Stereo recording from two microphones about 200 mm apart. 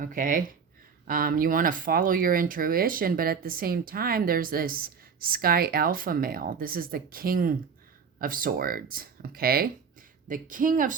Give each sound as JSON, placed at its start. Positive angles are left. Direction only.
{"t": 0.0, "sound": "speech", "side_deg": -40}